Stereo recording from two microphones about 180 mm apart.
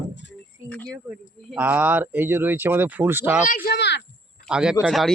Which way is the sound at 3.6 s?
65° left (ahead or behind).